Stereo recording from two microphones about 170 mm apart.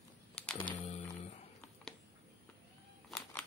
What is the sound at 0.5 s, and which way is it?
Music, 35° left (ahead or behind).